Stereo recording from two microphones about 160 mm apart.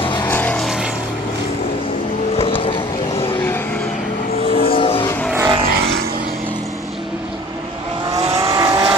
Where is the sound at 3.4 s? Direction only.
15° left (ahead or behind).